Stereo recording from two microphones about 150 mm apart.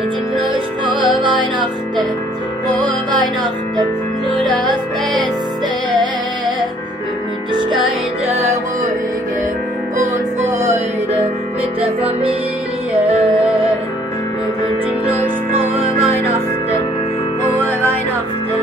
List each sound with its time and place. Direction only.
0.8 s music: 35° right (ahead or behind)
8.3 s music: 15° right (ahead or behind)
11.8 s music: 40° right (ahead or behind)